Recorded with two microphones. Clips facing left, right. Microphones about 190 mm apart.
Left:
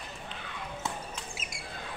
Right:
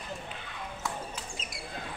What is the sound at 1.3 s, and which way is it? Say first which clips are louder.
Squawk: right 1 dB; 5° left (ahead or behind).